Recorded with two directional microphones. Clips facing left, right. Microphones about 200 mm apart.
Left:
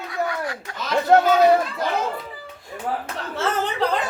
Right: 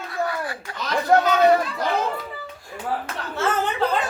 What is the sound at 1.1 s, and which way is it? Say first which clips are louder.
Speech: left 2 dB; 25° left (ahead or behind).